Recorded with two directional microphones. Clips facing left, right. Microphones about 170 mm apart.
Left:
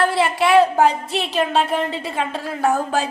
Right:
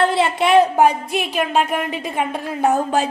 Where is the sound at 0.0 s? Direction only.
25° right (ahead or behind).